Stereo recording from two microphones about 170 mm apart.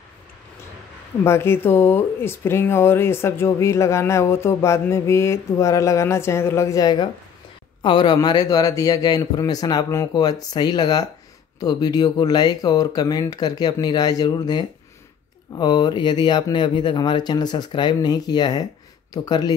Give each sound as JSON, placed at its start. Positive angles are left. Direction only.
{"t": 1.2, "sound": "a man's voice", "side_deg": 15}